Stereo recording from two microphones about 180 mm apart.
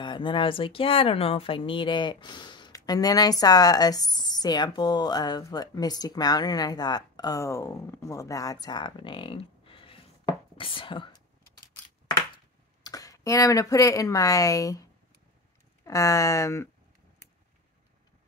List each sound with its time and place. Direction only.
0.0 s speech: 25° left (ahead or behind)
12.8 s speech: 20° left (ahead or behind)